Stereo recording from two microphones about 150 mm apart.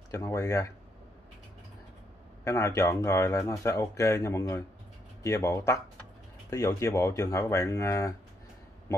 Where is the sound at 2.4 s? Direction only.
20° left (ahead or behind).